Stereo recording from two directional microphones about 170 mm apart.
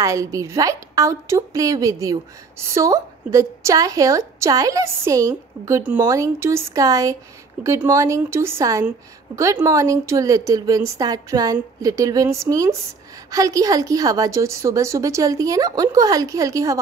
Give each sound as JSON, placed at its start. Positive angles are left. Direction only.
{"t": 0.0, "sound": "a woman's voice", "side_deg": -20}